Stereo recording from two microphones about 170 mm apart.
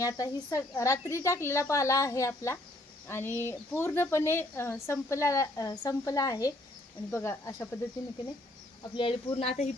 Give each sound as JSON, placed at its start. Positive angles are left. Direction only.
{"t": 0.0, "sound": "speech", "side_deg": 20}
{"t": 8.9, "sound": "speech", "side_deg": 30}